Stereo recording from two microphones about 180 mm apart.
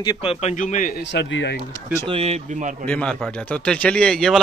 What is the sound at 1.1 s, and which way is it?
Speech, 85° left.